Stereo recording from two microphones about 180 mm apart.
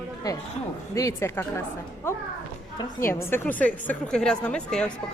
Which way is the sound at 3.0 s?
55° left (ahead or behind).